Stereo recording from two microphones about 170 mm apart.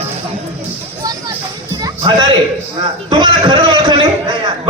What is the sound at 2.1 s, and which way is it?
A man's voice, 30° right (ahead or behind).